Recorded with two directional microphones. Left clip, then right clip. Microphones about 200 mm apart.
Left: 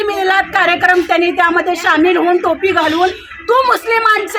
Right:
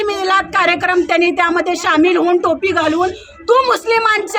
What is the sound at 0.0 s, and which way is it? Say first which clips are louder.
Speech: left 2 dB; 25° right (ahead or behind).